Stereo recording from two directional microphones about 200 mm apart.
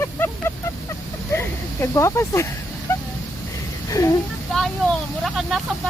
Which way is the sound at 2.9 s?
15° left (ahead or behind).